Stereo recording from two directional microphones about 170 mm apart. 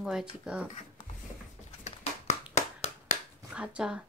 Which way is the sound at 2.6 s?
40° left (ahead or behind).